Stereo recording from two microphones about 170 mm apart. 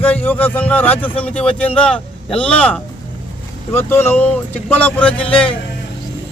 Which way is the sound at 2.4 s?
10° left (ahead or behind).